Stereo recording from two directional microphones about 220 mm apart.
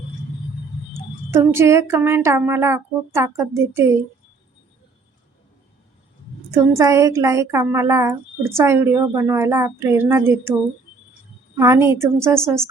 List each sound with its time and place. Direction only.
1.3 s speech: 10° right (ahead or behind)
6.5 s speech: 15° right (ahead or behind)
11.5 s speech: 10° right (ahead or behind)